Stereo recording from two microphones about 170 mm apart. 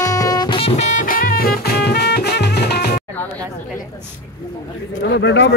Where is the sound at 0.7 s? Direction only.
50° left (ahead or behind); by 2.9 s 75° left (ahead or behind).